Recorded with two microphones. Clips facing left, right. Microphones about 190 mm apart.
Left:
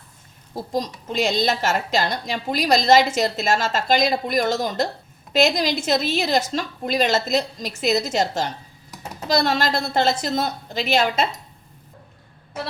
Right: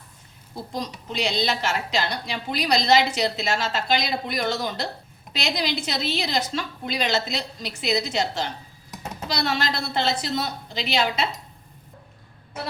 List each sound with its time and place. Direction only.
0.5 s a woman's voice: 45° left (ahead or behind)